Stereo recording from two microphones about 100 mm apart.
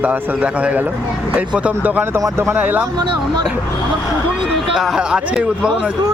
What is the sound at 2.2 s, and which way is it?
Speech, 30° right (ahead or behind).